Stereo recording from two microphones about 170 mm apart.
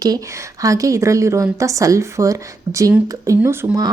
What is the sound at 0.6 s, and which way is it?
A woman's voice, 20° right (ahead or behind).